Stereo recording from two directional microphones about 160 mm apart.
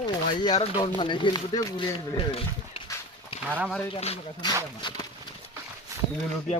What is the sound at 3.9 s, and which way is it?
Speech, 40° left (ahead or behind).